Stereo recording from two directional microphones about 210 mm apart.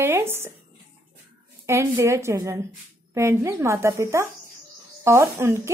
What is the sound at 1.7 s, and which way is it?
Speech, 15° right (ahead or behind).